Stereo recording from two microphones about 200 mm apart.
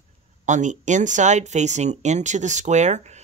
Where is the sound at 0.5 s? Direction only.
40° right (ahead or behind).